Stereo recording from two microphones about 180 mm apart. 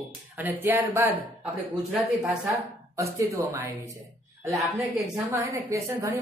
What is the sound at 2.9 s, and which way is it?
Speech, 15° right (ahead or behind).